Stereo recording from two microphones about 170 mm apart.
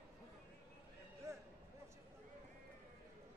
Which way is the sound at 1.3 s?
15° right (ahead or behind).